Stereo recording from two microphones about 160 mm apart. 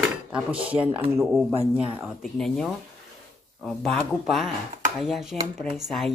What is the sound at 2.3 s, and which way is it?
Speech, centre (ahead or behind).